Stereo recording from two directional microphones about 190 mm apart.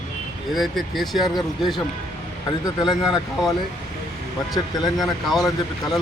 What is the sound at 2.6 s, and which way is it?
Speech, 25° left (ahead or behind).